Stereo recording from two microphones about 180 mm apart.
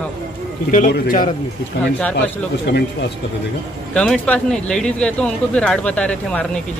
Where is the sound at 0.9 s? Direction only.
55° left (ahead or behind).